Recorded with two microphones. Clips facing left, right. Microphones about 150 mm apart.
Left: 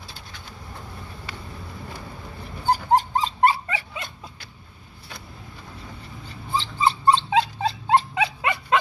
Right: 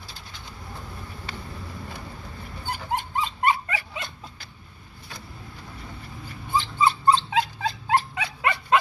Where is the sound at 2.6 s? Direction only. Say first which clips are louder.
Left 10 dB; 35° left (ahead or behind).